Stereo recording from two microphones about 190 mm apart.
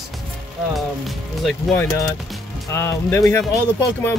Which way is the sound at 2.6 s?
15° left (ahead or behind).